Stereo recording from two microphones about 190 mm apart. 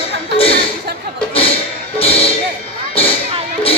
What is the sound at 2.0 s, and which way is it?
Music, 30° left (ahead or behind).